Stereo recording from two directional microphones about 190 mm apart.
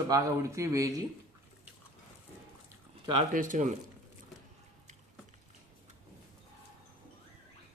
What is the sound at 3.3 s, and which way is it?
Speech, 45° right (ahead or behind).